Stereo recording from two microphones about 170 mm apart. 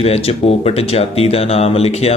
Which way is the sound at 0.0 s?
35° left (ahead or behind).